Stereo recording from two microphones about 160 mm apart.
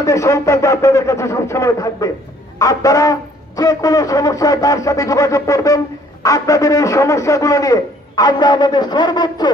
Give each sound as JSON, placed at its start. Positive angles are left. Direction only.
{"t": 0.0, "sound": "a man's voice", "side_deg": 20}